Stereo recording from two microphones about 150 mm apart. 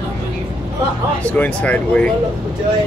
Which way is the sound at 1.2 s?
10° left (ahead or behind).